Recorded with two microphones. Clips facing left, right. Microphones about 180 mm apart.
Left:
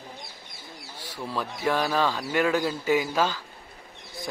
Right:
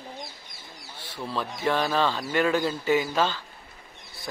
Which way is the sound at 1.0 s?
10° left (ahead or behind).